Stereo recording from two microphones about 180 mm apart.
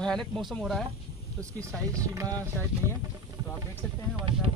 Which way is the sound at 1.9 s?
20° right (ahead or behind).